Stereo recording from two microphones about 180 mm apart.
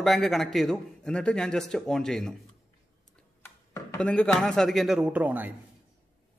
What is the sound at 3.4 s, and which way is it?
Chopping, 15° left (ahead or behind).